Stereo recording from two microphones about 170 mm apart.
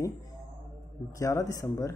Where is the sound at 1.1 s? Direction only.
20° left (ahead or behind).